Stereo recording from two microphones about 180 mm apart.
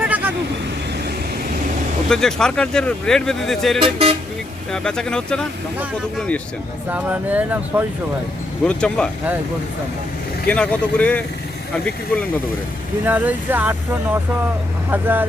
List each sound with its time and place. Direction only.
0.0 s vehicle: 10° right (ahead or behind)
2.0 s speech: 5° left (ahead or behind)
3.8 s speech: 30° right (ahead or behind)
4.7 s speech: 5° left (ahead or behind)
6.9 s speech: 10° right (ahead or behind)
8.6 s speech: 5° left (ahead or behind)
10.4 s speech: 5° left (ahead or behind)
13.1 s speech: 10° right (ahead or behind)